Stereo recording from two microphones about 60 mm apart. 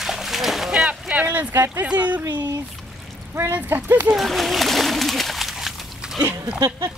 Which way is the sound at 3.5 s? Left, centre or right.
Right.